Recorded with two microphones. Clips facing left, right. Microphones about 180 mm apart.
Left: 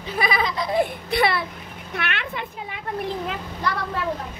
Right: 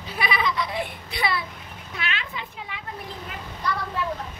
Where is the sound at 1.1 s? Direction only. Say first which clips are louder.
Left 6 dB; 60° left (ahead or behind).